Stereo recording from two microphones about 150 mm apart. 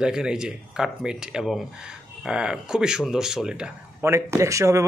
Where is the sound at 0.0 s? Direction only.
5° right (ahead or behind).